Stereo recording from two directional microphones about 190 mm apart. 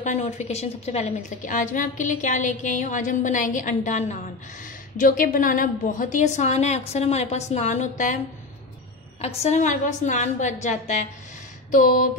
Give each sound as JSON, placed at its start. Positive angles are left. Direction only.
{"t": 0.0, "sound": "a woman's voice", "side_deg": 40}
{"t": 9.2, "sound": "a woman's voice", "side_deg": 35}